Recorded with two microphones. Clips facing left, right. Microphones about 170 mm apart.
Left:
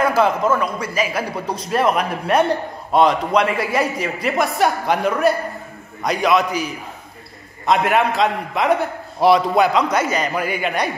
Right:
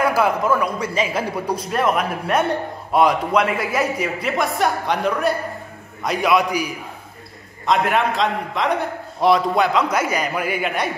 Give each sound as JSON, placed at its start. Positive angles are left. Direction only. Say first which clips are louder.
{"t": 0.0, "sound": "a sound", "louder": "left 2 dB", "side_deg": -10}
{"t": 0.6, "sound": "a man's voice", "louder": "even", "side_deg": -20}
{"t": 1.7, "sound": "a man's voice", "louder": "left 3 dB", "side_deg": 0}
{"t": 6.0, "sound": "a man's voice", "louder": "left 1 dB", "side_deg": -10}
{"t": 7.6, "sound": "a man's voice", "louder": "left 2 dB", "side_deg": 5}
{"t": 9.8, "sound": "a man's voice", "louder": "left 1 dB", "side_deg": -10}